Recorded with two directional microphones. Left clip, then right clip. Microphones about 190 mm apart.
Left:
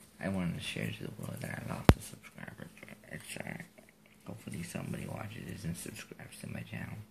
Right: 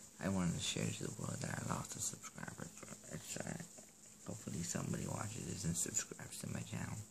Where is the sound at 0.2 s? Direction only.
10° right (ahead or behind).